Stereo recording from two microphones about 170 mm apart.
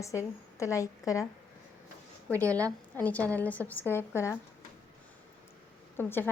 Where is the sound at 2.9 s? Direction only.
10° left (ahead or behind).